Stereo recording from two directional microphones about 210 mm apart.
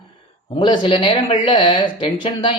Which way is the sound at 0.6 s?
20° left (ahead or behind).